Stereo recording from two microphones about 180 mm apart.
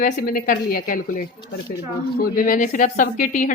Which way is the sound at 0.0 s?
50° left (ahead or behind).